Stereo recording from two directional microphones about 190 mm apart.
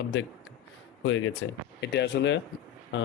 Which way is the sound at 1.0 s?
90° left.